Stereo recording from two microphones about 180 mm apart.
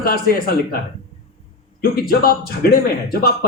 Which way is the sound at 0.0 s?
55° left (ahead or behind).